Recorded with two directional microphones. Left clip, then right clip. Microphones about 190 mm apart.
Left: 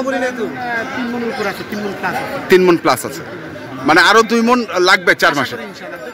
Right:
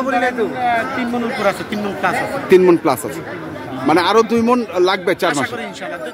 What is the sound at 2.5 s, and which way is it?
A man's voice, 5° right (ahead or behind).